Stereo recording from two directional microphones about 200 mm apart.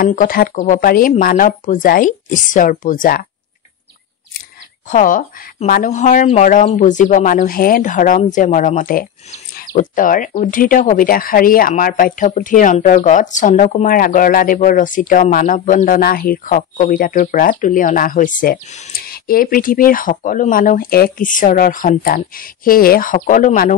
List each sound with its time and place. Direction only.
0.0 s a woman's voice: 45° left (ahead or behind)
4.8 s speech: 40° left (ahead or behind)